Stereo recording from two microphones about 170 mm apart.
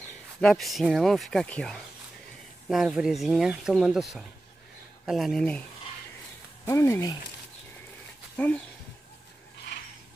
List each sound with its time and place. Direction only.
0.4 s speech: centre (ahead or behind)
6.6 s speech: 20° left (ahead or behind)